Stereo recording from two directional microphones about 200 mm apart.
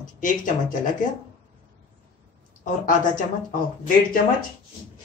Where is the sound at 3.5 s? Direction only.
45° left (ahead or behind).